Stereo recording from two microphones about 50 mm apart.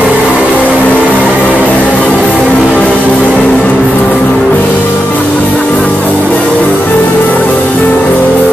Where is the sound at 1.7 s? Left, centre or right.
Left.